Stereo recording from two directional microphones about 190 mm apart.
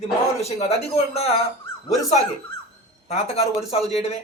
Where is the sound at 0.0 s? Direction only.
35° left (ahead or behind).